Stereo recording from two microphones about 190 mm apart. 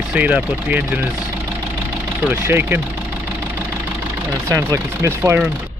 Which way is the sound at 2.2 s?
10° right (ahead or behind).